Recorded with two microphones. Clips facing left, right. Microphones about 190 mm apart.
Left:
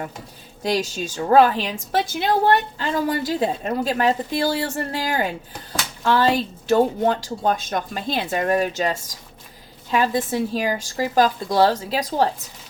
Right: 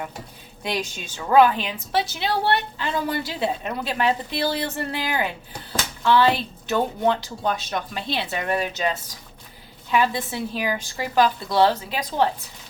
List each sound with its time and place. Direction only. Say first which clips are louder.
0.6 s a woman's voice: left 5 dB; 40° left (ahead or behind)